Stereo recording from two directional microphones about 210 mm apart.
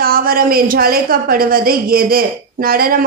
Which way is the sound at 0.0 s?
45° right (ahead or behind).